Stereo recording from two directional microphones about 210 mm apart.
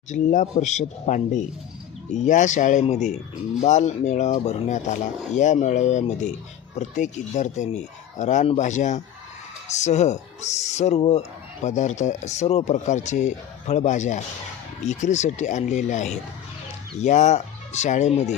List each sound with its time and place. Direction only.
0.1 s speech: 35° left (ahead or behind)